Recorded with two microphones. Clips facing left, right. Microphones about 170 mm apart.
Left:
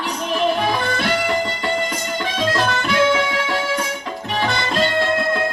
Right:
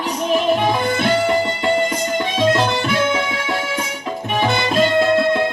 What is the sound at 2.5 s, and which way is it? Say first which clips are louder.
Music: right 2 dB; 20° right (ahead or behind).